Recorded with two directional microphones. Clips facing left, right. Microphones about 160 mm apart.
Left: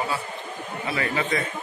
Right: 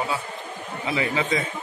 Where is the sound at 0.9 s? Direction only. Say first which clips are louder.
Right 2 dB; 15° right (ahead or behind).